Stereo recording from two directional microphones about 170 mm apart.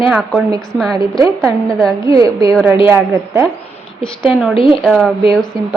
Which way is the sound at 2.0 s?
20° right (ahead or behind).